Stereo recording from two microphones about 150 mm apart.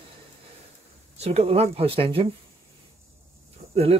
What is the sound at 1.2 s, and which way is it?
Speech, 45° right (ahead or behind).